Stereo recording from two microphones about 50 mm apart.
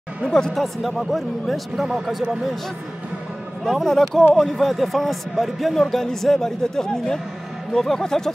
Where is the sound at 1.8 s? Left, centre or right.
Centre.